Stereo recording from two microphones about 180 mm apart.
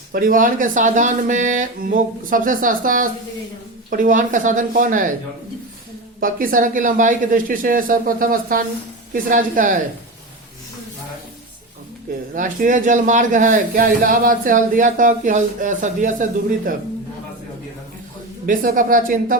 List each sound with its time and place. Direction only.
0.1 s a man's voice: 50° right (ahead or behind)
6.1 s a man's voice: 50° right (ahead or behind)
12.3 s a man's voice: 45° right (ahead or behind)
18.4 s a man's voice: 50° right (ahead or behind)